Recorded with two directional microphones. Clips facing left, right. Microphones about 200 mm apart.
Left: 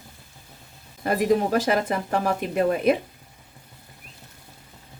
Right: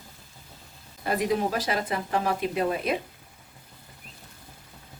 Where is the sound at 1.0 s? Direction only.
50° left (ahead or behind).